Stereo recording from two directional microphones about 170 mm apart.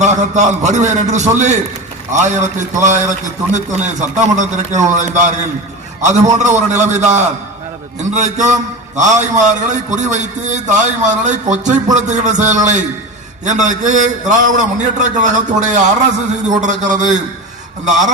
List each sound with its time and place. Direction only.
0.0 s a man's voice: 45° right (ahead or behind)